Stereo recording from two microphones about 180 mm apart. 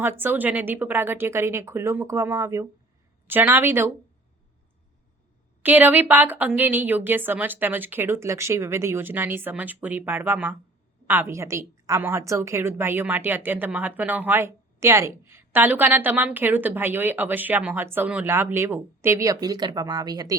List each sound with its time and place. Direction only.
0.0 s a woman's voice: 10° right (ahead or behind)
5.6 s a woman's voice: 10° right (ahead or behind)